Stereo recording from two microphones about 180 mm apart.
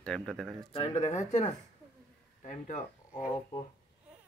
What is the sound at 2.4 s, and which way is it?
Speech, 45° left (ahead or behind).